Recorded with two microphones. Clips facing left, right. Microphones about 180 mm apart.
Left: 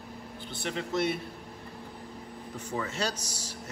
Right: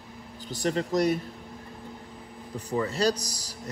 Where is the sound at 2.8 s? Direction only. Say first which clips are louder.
Right 8 dB; 35° right (ahead or behind).